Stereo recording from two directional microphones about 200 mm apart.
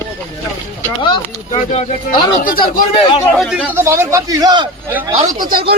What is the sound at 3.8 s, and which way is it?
Speech, 15° right (ahead or behind).